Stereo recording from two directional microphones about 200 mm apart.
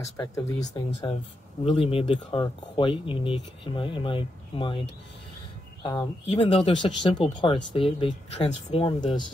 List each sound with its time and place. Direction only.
0.0 s speech: 15° left (ahead or behind)
1.1 s speech: 30° left (ahead or behind)